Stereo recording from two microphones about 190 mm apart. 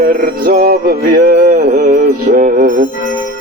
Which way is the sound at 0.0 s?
50° right (ahead or behind).